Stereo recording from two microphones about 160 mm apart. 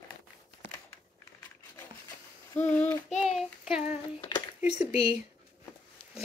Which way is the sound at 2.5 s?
10° left (ahead or behind).